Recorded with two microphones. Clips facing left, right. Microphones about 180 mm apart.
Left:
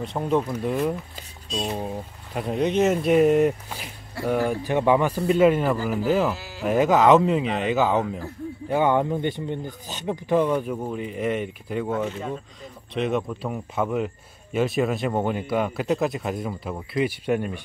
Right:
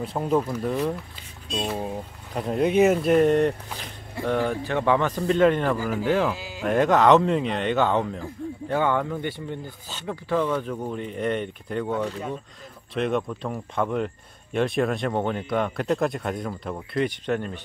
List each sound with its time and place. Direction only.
0.0 s speech: 5° right (ahead or behind)
6.3 s livestock: 15° right (ahead or behind)
6.6 s speech: 5° left (ahead or behind)